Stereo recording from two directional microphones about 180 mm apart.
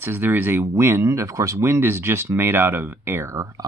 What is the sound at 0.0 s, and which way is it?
Speech, 10° right (ahead or behind).